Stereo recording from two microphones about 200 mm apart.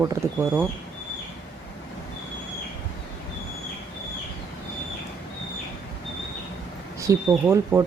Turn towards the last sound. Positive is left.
turn(degrees=-15)  # may be behind; listen again after turning